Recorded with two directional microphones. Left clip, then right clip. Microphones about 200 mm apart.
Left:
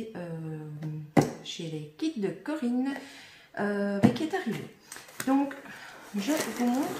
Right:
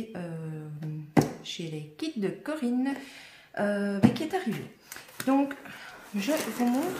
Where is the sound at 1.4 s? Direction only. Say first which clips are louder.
Even; 45° right (ahead or behind).